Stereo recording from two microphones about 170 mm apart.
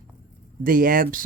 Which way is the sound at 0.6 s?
55° right (ahead or behind).